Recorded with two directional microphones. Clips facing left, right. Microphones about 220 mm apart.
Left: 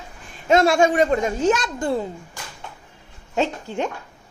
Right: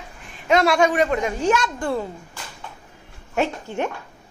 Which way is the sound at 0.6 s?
25° left (ahead or behind).